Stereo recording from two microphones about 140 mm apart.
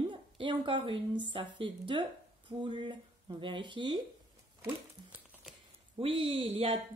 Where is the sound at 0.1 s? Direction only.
35° right (ahead or behind).